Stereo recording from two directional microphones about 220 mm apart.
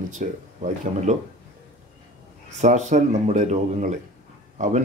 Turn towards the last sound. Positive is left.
turn(degrees=-35)  # may be behind; listen again after turning